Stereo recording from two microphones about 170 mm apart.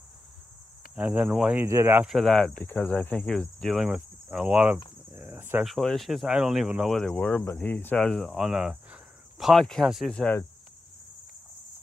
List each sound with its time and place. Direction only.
0.9 s speech: 10° right (ahead or behind)
2.0 s speech: centre (ahead or behind)
5.1 s cricket: 10° right (ahead or behind)
5.7 s speech: centre (ahead or behind)